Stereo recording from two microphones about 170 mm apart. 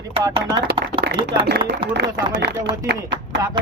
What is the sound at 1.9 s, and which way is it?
Speech, 85° right.